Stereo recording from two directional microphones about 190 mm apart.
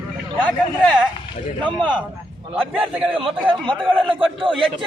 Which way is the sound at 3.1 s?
30° right (ahead or behind).